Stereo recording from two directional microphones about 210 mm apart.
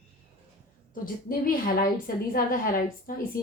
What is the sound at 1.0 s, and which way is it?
A woman's voice, 45° left (ahead or behind).